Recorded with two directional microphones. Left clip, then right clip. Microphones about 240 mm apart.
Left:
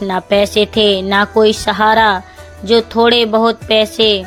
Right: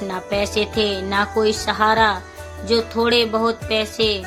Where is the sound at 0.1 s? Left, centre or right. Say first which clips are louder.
Left 10 dB; left.